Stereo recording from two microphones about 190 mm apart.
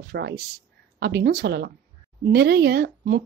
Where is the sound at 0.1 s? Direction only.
65° right (ahead or behind).